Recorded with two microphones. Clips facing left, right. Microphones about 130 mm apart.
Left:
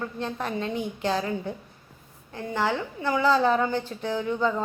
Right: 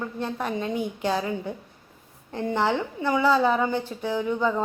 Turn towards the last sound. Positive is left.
turn(degrees=-10)  # may be behind; listen again after turning